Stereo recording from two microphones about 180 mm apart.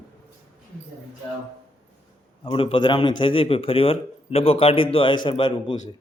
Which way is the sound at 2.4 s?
30° left (ahead or behind).